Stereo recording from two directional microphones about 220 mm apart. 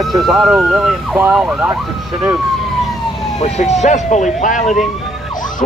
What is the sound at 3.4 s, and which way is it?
Speech, 30° left (ahead or behind).